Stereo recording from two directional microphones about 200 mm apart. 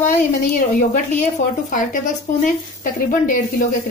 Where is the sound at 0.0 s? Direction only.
40° left (ahead or behind).